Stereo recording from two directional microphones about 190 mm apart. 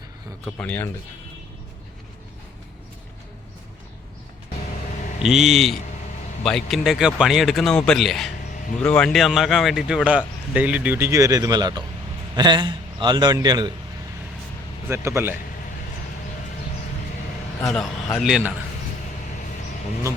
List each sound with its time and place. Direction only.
0.4 s speech: 5° left (ahead or behind)
5.2 s a man's voice: centre (ahead or behind); by 13.7 s 20° right (ahead or behind)
14.8 s a man's voice: 15° right (ahead or behind)
18.2 s speech: 5° right (ahead or behind)